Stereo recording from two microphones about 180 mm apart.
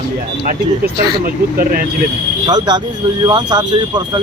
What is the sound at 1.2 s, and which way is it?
Speech, 55° right (ahead or behind).